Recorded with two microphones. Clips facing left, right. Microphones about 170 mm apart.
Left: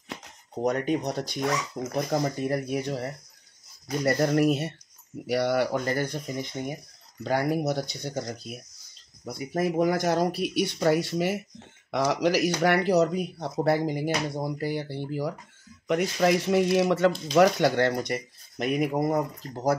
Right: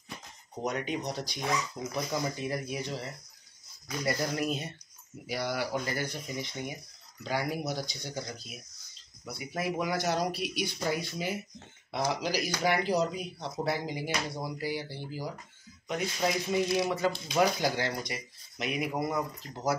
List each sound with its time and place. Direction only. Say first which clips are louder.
0.7 s speech: left 7 dB; 55° left (ahead or behind)